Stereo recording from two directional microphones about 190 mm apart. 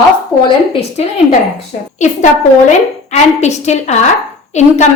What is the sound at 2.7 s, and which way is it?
A woman's voice, 35° left (ahead or behind).